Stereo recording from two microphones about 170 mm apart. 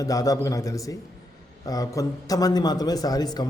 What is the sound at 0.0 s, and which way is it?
A man's voice, 20° left (ahead or behind).